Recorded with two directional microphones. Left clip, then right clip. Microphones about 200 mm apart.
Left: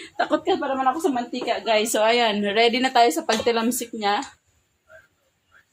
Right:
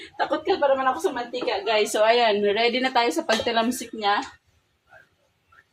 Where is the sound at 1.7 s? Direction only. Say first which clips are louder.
Even; 45° left (ahead or behind).